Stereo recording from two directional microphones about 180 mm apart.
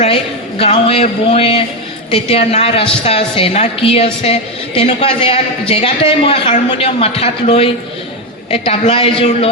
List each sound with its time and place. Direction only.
0.6 s a woman's voice: 35° left (ahead or behind)